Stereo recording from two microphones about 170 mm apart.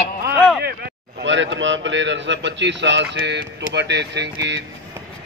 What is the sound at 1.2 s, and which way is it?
A man's voice, 90° right.